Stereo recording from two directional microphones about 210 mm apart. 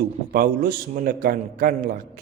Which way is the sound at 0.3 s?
45° right (ahead or behind).